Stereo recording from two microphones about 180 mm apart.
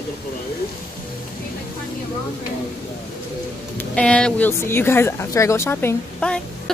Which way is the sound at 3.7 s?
5° left (ahead or behind).